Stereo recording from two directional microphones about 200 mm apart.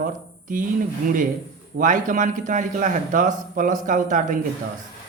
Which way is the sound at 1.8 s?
40° right (ahead or behind).